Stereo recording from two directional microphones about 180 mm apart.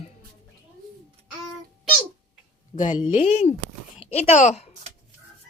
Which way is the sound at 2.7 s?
45° left (ahead or behind).